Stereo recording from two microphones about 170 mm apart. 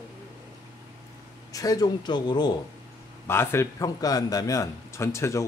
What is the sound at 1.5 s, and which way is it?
A man's voice, 20° left (ahead or behind).